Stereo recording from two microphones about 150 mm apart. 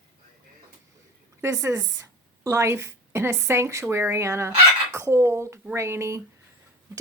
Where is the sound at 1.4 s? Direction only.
20° right (ahead or behind).